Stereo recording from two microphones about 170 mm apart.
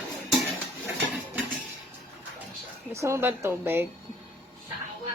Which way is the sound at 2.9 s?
15° right (ahead or behind).